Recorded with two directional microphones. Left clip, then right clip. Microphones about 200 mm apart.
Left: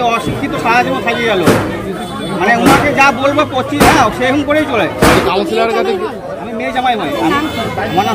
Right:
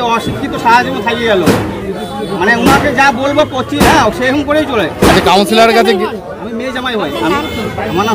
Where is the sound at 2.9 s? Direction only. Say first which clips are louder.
Right 1 dB; centre (ahead or behind).